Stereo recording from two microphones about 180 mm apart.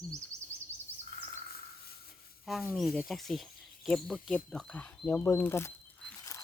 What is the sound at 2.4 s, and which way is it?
Speech, centre (ahead or behind).